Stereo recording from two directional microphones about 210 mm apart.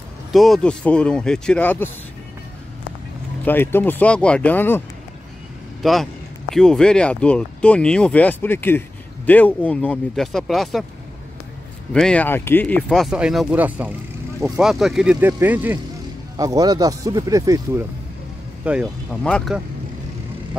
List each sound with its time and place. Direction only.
0.3 s speech: centre (ahead or behind)
3.4 s a man's voice: 10° left (ahead or behind)
11.9 s speech: 5° left (ahead or behind); by 17.8 s 15° right (ahead or behind)
18.6 s speech: 5° right (ahead or behind)